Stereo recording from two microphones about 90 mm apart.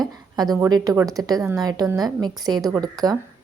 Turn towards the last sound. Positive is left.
turn(degrees=-45)  # may be behind; listen again after turning